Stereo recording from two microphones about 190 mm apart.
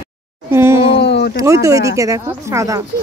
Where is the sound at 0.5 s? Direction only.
15° right (ahead or behind).